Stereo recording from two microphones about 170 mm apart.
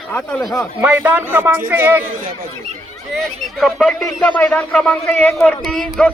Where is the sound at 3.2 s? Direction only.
Centre (ahead or behind).